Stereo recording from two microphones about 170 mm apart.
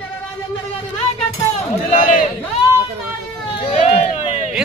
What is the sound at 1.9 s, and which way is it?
Speech, 50° left (ahead or behind).